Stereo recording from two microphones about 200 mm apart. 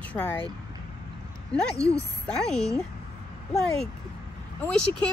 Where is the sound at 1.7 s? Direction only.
55° left (ahead or behind).